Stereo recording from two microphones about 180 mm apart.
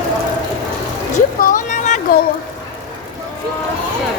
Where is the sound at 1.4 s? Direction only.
50° left (ahead or behind).